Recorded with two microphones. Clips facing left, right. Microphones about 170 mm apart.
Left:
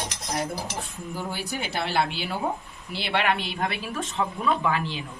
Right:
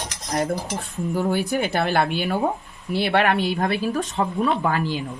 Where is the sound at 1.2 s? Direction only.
50° right (ahead or behind).